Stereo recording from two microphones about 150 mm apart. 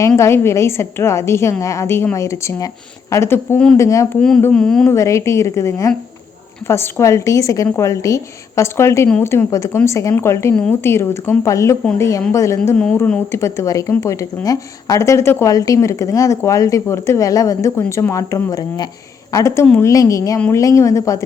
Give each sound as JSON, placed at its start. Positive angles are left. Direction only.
{"t": 0.2, "sound": "a woman's voice", "side_deg": 20}
{"t": 4.5, "sound": "a woman's voice", "side_deg": 5}
{"t": 4.9, "sound": "a woman's voice", "side_deg": 20}